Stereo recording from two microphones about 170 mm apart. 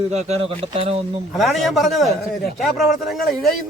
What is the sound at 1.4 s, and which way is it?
A man's voice, centre (ahead or behind).